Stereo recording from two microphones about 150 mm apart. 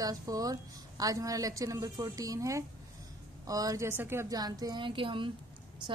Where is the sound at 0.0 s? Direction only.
25° right (ahead or behind).